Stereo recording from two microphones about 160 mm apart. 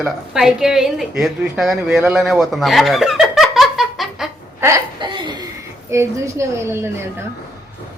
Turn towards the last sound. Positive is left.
turn(degrees=-15)  # may be behind; listen again after turning